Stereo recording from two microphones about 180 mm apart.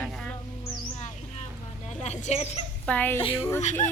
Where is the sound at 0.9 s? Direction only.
35° left (ahead or behind).